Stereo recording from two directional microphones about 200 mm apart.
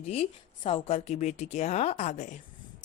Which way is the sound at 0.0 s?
30° left (ahead or behind).